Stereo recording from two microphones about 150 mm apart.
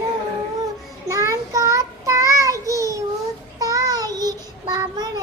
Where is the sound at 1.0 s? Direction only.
20° right (ahead or behind).